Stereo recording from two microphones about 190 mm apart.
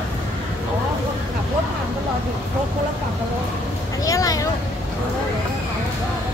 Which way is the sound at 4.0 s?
15° left (ahead or behind).